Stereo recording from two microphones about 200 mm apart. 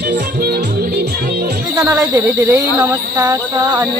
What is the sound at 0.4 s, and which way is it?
Music, 55° right (ahead or behind).